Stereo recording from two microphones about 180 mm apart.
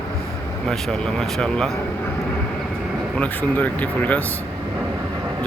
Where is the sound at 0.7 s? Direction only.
Centre (ahead or behind).